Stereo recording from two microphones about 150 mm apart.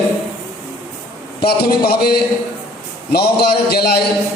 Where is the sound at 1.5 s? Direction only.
90° left.